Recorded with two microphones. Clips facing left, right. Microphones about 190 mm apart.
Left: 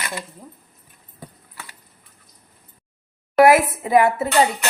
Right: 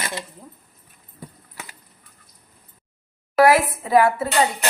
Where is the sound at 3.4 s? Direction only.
20° left (ahead or behind).